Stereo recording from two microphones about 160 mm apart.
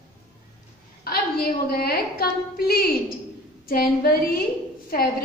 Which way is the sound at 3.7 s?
70° left (ahead or behind).